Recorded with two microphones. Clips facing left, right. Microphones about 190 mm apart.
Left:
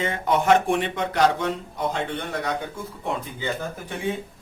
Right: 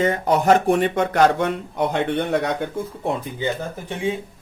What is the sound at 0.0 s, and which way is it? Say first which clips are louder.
Speech: right 4 dB; 40° right (ahead or behind).